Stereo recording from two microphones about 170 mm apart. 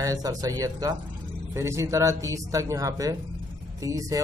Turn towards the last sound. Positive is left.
turn(degrees=-20)  # may be behind; listen again after turning